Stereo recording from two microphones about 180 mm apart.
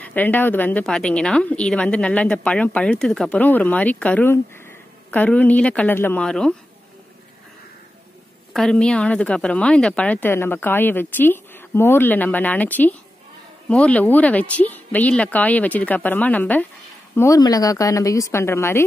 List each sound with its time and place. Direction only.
0.0 s a woman's voice: 10° left (ahead or behind)
8.5 s a woman's voice: 5° left (ahead or behind)